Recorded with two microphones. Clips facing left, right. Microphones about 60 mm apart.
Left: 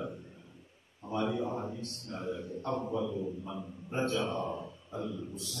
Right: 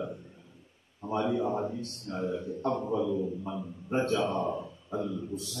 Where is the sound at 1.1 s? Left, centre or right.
Right.